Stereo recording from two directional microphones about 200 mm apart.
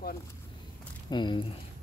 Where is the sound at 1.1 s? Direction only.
25° left (ahead or behind).